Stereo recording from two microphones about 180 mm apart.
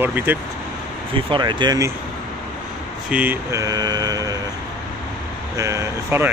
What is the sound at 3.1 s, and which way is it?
Speech, 10° right (ahead or behind).